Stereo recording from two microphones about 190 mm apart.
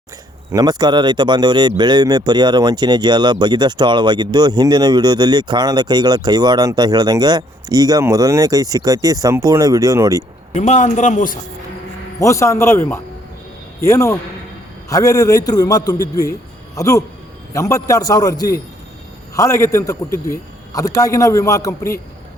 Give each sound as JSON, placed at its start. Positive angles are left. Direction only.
{"t": 0.5, "sound": "speech", "side_deg": -20}
{"t": 10.5, "sound": "a man's voice", "side_deg": 40}
{"t": 12.2, "sound": "a man's voice", "side_deg": 15}